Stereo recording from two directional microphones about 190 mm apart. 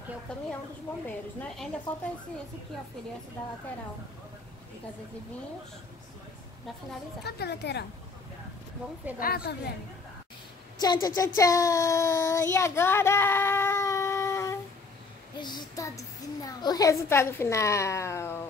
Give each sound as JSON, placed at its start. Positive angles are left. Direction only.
{"t": 0.3, "sound": "a woman's voice", "side_deg": 5}
{"t": 7.2, "sound": "a woman's voice", "side_deg": 60}
{"t": 9.2, "sound": "a woman's voice", "side_deg": 55}
{"t": 10.8, "sound": "a child's voice", "side_deg": 20}